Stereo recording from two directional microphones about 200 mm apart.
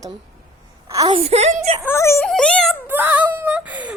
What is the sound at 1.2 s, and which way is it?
Speech, 30° right (ahead or behind).